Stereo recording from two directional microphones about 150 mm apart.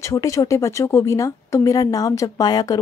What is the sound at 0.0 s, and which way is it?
Speech, 20° left (ahead or behind).